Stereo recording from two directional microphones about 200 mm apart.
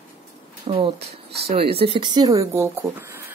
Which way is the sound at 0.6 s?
30° right (ahead or behind).